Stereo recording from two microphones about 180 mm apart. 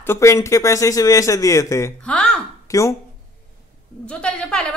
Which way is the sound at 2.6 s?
15° left (ahead or behind).